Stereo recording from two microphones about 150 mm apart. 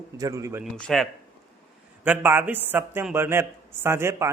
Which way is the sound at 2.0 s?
10° right (ahead or behind).